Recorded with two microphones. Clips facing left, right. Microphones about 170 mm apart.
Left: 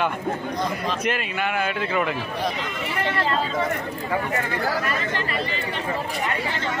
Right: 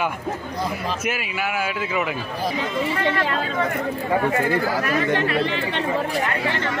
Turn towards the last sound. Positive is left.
turn(degrees=-65)  # may be behind; listen again after turning